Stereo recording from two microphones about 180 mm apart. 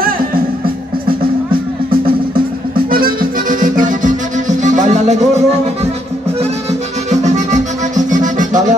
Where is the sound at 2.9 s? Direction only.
55° right (ahead or behind).